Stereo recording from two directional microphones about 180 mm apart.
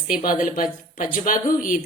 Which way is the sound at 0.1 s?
50° left (ahead or behind).